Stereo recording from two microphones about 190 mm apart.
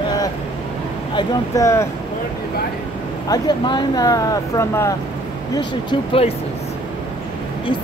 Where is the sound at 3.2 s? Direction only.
20° left (ahead or behind).